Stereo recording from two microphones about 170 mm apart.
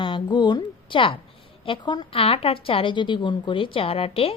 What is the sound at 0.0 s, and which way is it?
A woman's voice, 25° left (ahead or behind).